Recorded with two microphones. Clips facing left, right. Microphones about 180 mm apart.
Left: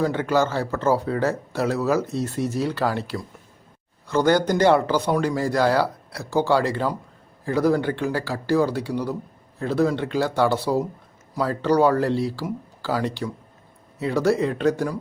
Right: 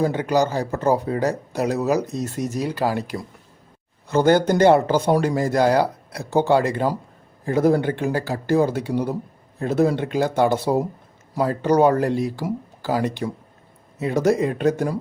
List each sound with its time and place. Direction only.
0.0 s speech: 15° right (ahead or behind)
4.3 s speech: 25° right (ahead or behind)
4.9 s speech: 50° right (ahead or behind)
5.2 s a man's voice: 20° right (ahead or behind)